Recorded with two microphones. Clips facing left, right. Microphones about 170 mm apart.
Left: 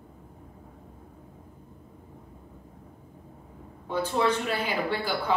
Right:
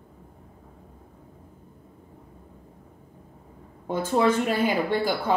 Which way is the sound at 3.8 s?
50° right (ahead or behind).